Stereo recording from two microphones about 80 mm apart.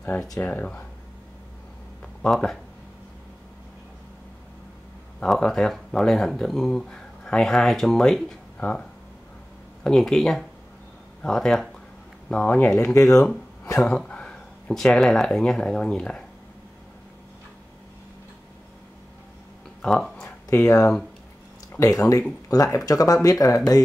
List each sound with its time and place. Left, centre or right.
0.4 s speech: centre
2.2 s speech: centre
5.2 s speech: centre
9.8 s speech: centre
12.3 s speech: centre
12.9 s speech: left
13.7 s speech: centre
19.8 s speech: centre
20.4 s speech: left